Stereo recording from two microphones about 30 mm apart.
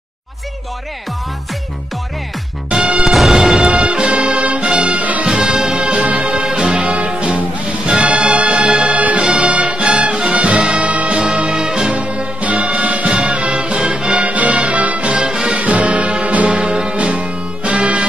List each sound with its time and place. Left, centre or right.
2.8 s music: centre
3.6 s music: right
4.0 s music: right
5.4 s music: centre
5.9 s music: right
9.5 s music: right
11.5 s music: right
11.9 s music: right
13.7 s music: right
14.2 s music: right
15.0 s music: right
15.6 s music: right
16.4 s music: right